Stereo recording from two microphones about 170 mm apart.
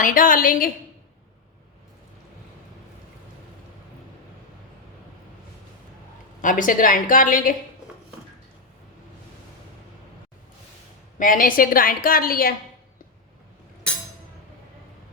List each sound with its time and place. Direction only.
0.0 s a woman's voice: 55° left (ahead or behind)
6.4 s a woman's voice: 50° left (ahead or behind)
11.2 s a woman's voice: 55° left (ahead or behind)